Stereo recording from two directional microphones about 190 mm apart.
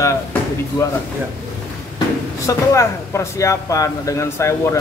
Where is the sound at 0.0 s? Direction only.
15° left (ahead or behind).